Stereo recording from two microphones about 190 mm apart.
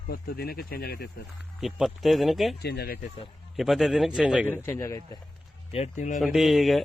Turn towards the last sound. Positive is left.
turn(degrees=0)  # may be behind; listen again after turning